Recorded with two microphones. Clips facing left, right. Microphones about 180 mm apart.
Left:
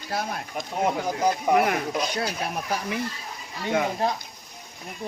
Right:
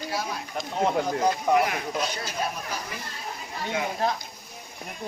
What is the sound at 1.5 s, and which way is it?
Speech, 50° left (ahead or behind).